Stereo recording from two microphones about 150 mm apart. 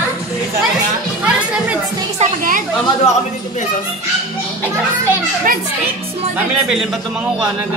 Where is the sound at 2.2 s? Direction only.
60° right (ahead or behind).